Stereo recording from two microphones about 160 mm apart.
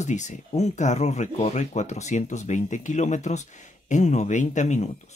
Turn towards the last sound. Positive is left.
turn(degrees=50)  # may be behind; listen again after turning